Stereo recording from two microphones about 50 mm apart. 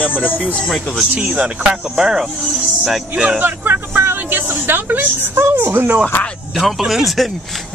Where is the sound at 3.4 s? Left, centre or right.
Right.